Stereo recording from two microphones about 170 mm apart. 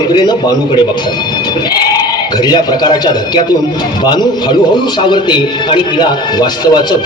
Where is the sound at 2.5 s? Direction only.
25° left (ahead or behind).